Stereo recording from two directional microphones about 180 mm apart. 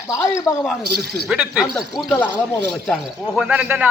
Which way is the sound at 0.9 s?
60° right (ahead or behind).